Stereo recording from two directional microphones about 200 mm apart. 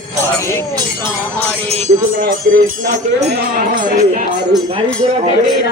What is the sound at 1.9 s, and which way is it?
Speech, 55° right (ahead or behind).